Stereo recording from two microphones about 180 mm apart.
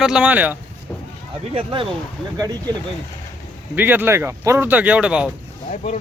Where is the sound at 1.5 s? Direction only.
30° right (ahead or behind).